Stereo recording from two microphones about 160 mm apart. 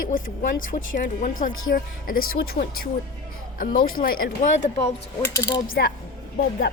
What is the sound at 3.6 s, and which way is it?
Speech, 60° left (ahead or behind).